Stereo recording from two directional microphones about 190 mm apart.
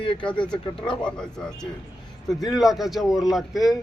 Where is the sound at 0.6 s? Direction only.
25° left (ahead or behind).